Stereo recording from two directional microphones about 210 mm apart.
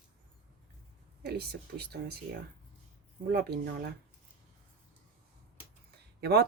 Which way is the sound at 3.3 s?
50° right (ahead or behind).